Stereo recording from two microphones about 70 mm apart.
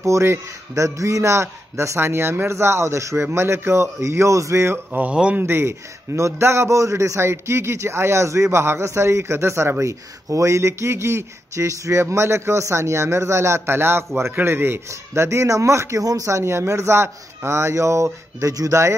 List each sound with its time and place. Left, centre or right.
0.0 s a man's voice: right
5.1 s speech: centre
5.4 s a man's voice: right